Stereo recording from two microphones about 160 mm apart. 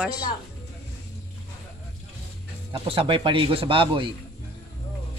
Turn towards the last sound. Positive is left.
turn(degrees=-35)  # may be behind; listen again after turning